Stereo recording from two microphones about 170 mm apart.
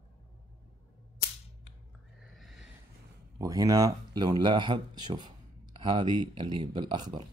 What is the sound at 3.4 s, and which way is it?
Speech, 20° right (ahead or behind).